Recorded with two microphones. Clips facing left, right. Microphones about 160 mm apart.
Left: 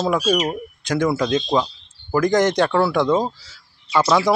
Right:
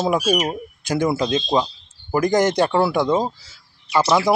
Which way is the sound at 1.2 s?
25° right (ahead or behind).